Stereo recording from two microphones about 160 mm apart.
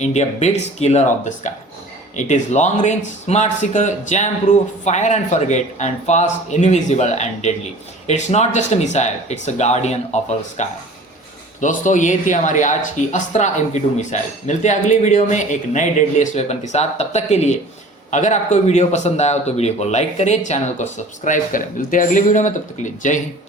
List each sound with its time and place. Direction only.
0.0 s speech: 45° left (ahead or behind)